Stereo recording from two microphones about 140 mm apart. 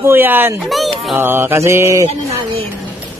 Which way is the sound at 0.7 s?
Centre (ahead or behind).